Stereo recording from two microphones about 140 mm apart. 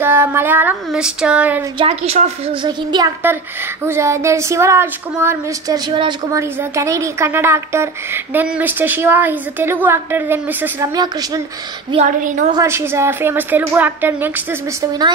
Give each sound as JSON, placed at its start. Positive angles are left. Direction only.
{"t": 0.0, "sound": "a woman's voice", "side_deg": -15}
{"t": 1.8, "sound": "a woman's voice", "side_deg": -45}
{"t": 3.2, "sound": "speech", "side_deg": -15}
{"t": 6.4, "sound": "a woman's voice", "side_deg": -20}
{"t": 10.9, "sound": "speech", "side_deg": -25}
{"t": 12.1, "sound": "a woman's voice", "side_deg": -65}
{"t": 12.5, "sound": "a woman's voice", "side_deg": -20}